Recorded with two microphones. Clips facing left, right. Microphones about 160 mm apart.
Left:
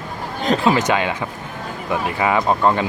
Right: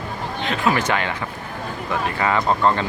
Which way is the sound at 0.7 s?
15° left (ahead or behind).